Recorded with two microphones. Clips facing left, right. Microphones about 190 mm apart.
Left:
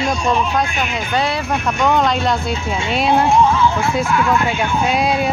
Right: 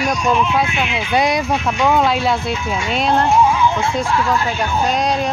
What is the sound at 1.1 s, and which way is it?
Speech, 15° right (ahead or behind).